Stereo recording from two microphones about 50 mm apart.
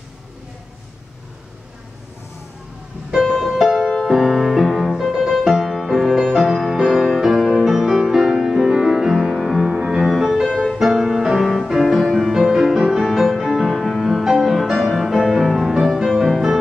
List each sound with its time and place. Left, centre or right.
3.3 s music: centre
9.9 s music: centre
12.3 s music: centre